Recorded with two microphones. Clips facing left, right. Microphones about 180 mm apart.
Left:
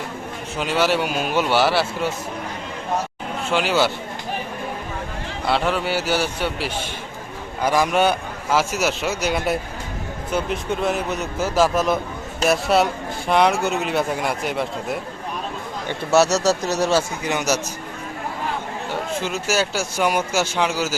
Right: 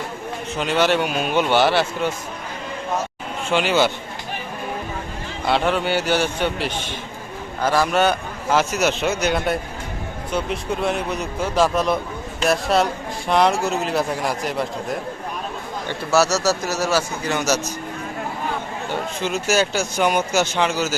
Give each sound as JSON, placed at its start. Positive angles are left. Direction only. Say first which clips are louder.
{"t": 0.6, "sound": "speech", "louder": "right 1 dB", "side_deg": 5}
{"t": 3.5, "sound": "speech", "louder": "right 1 dB", "side_deg": 5}
{"t": 5.5, "sound": "speech", "louder": "right 2 dB", "side_deg": 0}
{"t": 16.1, "sound": "speech", "louder": "left 2 dB", "side_deg": 0}
{"t": 16.9, "sound": "speech", "louder": "left 1 dB", "side_deg": 15}
{"t": 19.2, "sound": "speech", "louder": "right 4 dB", "side_deg": 5}